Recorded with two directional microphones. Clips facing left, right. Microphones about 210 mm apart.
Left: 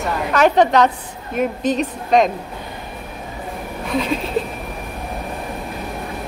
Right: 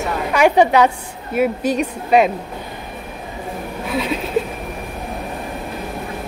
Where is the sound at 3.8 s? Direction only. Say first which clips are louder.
Left 1 dB; 5° right (ahead or behind).